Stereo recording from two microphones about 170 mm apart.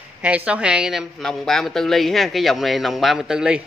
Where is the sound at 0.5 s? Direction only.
5° right (ahead or behind).